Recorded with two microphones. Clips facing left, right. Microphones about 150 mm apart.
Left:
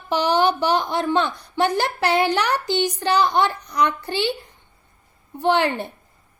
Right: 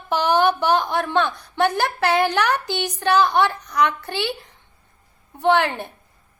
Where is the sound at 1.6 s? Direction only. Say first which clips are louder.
Right 1 dB; 55° right (ahead or behind).